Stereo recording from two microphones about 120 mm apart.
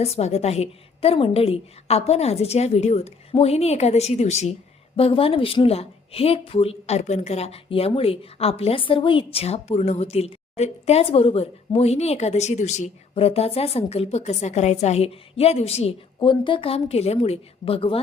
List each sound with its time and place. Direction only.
0.0 s a woman's voice: 60° left (ahead or behind)
4.9 s a woman's voice: 50° left (ahead or behind)
16.2 s a woman's voice: 40° left (ahead or behind)